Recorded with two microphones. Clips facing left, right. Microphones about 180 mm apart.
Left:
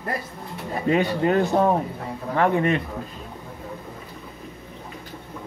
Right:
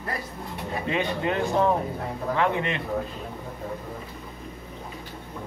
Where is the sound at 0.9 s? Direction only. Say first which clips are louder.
Left 6 dB; 35° left (ahead or behind).